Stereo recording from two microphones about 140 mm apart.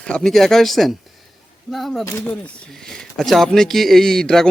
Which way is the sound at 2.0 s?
15° left (ahead or behind).